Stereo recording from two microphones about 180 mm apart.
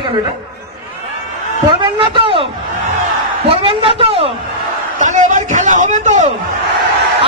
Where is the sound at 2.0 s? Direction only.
30° right (ahead or behind).